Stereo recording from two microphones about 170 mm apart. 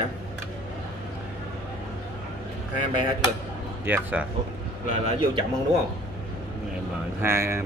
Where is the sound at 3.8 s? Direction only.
10° right (ahead or behind).